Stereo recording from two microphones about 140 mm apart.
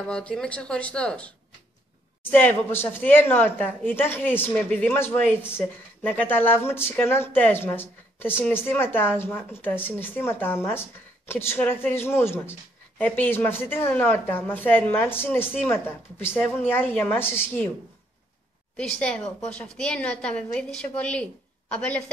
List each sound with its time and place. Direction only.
0.1 s speech: 5° left (ahead or behind)
2.3 s speech: 15° left (ahead or behind)
18.8 s speech: 5° left (ahead or behind)